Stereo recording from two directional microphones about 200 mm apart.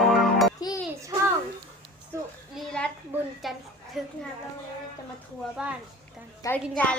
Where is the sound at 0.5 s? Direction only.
20° left (ahead or behind).